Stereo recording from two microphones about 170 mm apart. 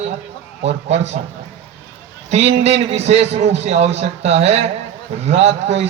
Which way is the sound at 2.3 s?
40° right (ahead or behind).